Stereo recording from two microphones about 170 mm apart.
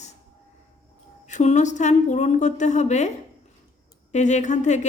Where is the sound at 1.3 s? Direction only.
45° left (ahead or behind).